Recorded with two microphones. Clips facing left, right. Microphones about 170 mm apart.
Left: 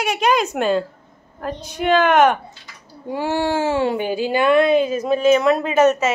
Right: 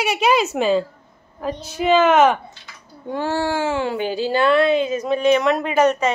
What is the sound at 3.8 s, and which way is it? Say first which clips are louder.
A woman's voice: left 2 dB; 15° left (ahead or behind).